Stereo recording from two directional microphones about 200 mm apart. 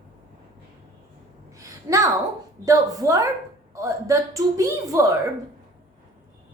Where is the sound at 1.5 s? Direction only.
15° right (ahead or behind).